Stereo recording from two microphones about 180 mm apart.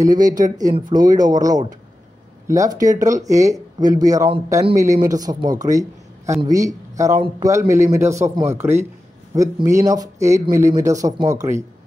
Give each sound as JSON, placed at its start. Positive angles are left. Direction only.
{"t": 0.0, "sound": "speech", "side_deg": -20}